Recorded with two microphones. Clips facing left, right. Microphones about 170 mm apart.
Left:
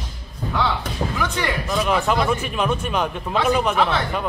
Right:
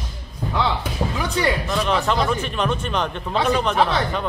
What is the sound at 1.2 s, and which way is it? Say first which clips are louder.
Speech: right 2 dB; 35° right (ahead or behind).